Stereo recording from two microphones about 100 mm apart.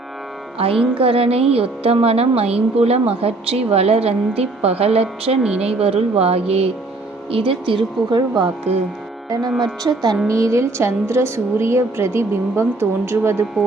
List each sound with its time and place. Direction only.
0.9 s a woman's voice: 70° right (ahead or behind); by 4.9 s 90° right
4.9 s a woman's voice: 80° right
5.4 s speech: 10° right (ahead or behind)
5.6 s speech: 85° right
7.3 s speech: 65° right (ahead or behind)
8.7 s speech: 90° right
9.5 s speech: centre (ahead or behind)
9.8 s a woman's voice: 40° right (ahead or behind)